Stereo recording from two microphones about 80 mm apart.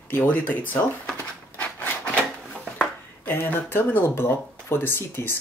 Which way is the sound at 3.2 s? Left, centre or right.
Left.